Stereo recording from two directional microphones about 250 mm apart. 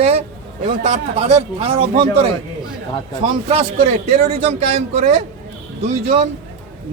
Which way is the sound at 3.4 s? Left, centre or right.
Right.